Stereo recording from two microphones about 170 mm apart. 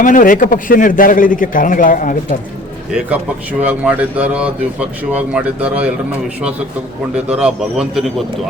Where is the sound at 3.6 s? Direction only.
10° right (ahead or behind).